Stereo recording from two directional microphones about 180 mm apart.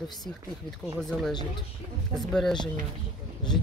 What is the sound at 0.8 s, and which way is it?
Speech, 5° right (ahead or behind).